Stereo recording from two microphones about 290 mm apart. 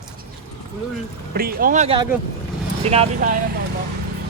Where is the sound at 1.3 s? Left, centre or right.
Right.